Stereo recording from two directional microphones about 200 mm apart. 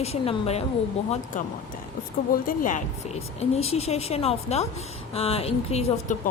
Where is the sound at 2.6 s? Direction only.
35° left (ahead or behind).